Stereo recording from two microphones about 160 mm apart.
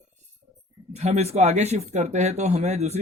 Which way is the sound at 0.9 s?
45° right (ahead or behind).